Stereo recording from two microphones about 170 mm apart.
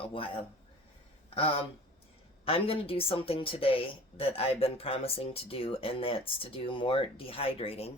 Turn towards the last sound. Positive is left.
turn(degrees=35)  # may be behind; listen again after turning